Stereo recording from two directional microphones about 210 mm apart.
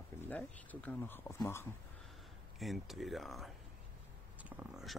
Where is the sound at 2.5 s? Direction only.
Centre (ahead or behind).